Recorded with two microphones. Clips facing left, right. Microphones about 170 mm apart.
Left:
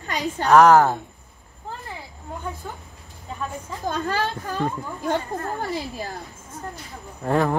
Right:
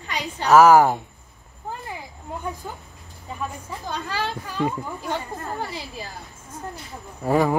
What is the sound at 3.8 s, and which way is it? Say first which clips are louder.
Speech: left 5 dB; 45° left (ahead or behind).